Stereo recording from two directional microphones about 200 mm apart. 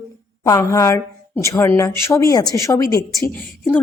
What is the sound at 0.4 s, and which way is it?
A woman's voice, 15° left (ahead or behind).